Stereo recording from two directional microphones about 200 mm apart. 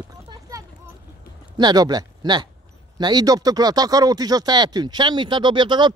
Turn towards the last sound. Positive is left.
turn(degrees=-20)  # may be behind; listen again after turning